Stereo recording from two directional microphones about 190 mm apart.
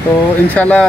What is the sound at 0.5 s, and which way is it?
Speech, 5° left (ahead or behind).